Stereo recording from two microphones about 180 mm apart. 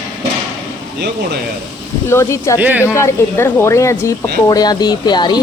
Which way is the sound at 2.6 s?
10° right (ahead or behind).